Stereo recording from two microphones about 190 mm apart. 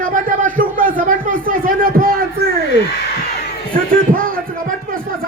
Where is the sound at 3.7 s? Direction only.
50° right (ahead or behind).